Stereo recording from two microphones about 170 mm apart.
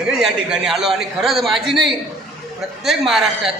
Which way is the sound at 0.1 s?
5° right (ahead or behind).